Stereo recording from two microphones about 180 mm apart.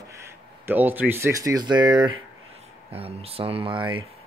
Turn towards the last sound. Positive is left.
turn(degrees=-30)  # may be behind; listen again after turning